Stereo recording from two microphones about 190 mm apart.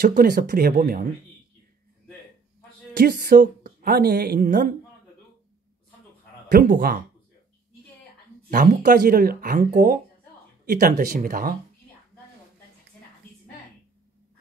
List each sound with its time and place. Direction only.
0.0 s speech: 45° right (ahead or behind)
2.9 s a woman's voice: 50° right (ahead or behind)
6.5 s speech: 50° right (ahead or behind)
8.5 s speech: 45° right (ahead or behind)